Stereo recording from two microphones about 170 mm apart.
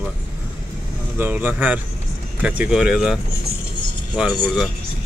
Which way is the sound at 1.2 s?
10° right (ahead or behind).